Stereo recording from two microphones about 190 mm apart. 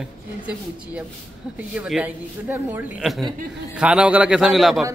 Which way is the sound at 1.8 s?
5° right (ahead or behind).